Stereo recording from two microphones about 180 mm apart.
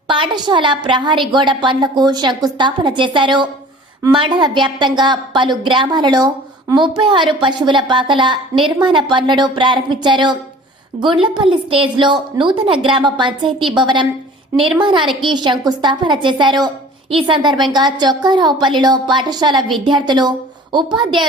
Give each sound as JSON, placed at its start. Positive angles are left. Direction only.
{"t": 0.1, "sound": "a woman's voice", "side_deg": -25}